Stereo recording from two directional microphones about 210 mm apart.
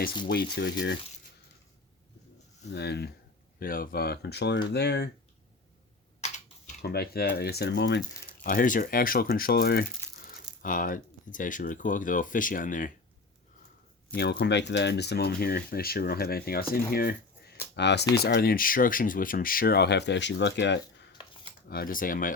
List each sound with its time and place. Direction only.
0.3 s speech: 50° left (ahead or behind)
2.6 s speech: 50° left (ahead or behind)
6.2 s typing: 30° left (ahead or behind)
6.8 s speech: 50° left (ahead or behind)
8.4 s speech: 40° left (ahead or behind)
14.2 s speech: 55° left (ahead or behind)
21.7 s speech: 45° left (ahead or behind)